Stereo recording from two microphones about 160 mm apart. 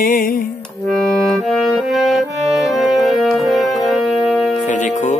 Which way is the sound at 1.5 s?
Centre (ahead or behind).